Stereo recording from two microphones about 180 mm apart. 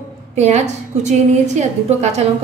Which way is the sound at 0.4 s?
40° right (ahead or behind).